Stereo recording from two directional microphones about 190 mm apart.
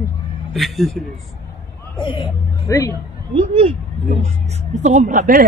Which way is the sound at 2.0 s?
25° left (ahead or behind).